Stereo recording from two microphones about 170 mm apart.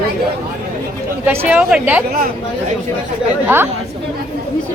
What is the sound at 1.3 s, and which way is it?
Speech, 10° right (ahead or behind).